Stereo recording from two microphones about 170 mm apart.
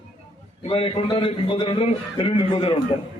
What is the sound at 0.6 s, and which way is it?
A man's voice, 35° left (ahead or behind).